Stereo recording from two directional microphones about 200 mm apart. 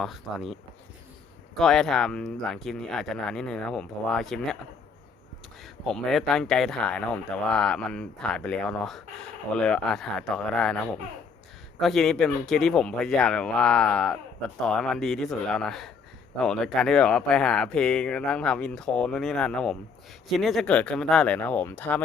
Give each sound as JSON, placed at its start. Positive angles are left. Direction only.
{"t": 0.0, "sound": "speech", "side_deg": 0}
{"t": 1.5, "sound": "speech", "side_deg": 0}
{"t": 5.6, "sound": "speech", "side_deg": 0}